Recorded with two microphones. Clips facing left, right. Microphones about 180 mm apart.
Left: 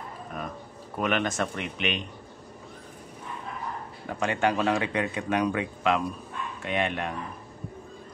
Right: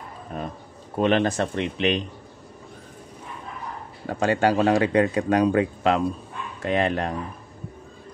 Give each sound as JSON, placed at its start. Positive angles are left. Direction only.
{"t": 0.3, "sound": "speech", "side_deg": -30}
{"t": 4.1, "sound": "speech", "side_deg": -30}